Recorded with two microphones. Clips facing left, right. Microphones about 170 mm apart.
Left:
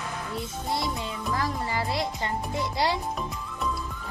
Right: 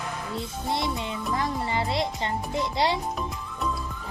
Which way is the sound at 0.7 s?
25° right (ahead or behind).